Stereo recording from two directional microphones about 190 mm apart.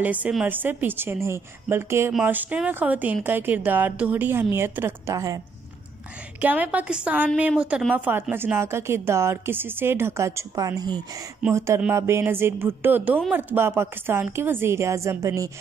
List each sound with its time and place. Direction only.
0.0 s a woman's voice: 10° right (ahead or behind)
6.4 s a woman's voice: 10° right (ahead or behind)